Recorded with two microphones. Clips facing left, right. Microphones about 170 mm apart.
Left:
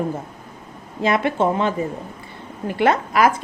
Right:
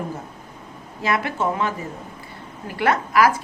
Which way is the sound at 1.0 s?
25° left (ahead or behind).